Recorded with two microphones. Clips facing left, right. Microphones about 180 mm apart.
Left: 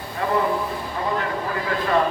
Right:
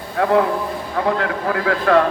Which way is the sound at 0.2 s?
85° right.